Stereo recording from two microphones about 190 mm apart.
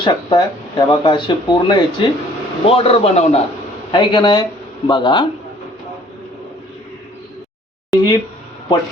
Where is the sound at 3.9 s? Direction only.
25° left (ahead or behind).